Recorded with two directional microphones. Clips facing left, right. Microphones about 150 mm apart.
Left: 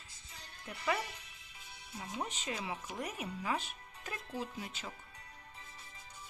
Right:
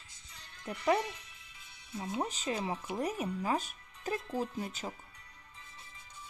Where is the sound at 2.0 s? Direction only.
30° right (ahead or behind).